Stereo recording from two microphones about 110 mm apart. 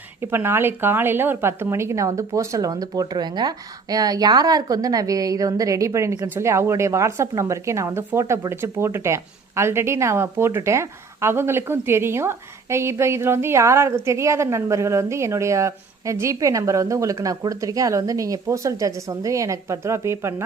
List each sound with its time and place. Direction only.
0.2 s speech: 20° right (ahead or behind)